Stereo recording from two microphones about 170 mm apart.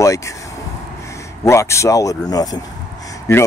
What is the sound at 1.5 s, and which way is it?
Speech, 15° left (ahead or behind).